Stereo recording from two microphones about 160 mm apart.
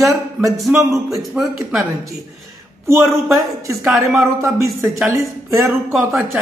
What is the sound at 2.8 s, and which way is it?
Speech, 15° right (ahead or behind).